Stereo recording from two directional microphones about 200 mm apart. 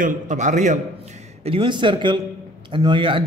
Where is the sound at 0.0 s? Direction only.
40° right (ahead or behind).